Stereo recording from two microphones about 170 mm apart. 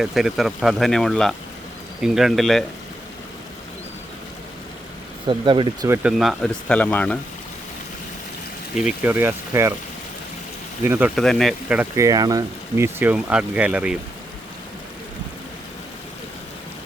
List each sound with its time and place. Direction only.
0.0 s speech: centre (ahead or behind)
5.2 s speech: 30° right (ahead or behind)
5.9 s speech: 5° right (ahead or behind)
8.7 s speech: 5° right (ahead or behind)
10.8 s speech: 10° right (ahead or behind)
11.1 s speech: centre (ahead or behind)
11.8 s speech: 20° right (ahead or behind)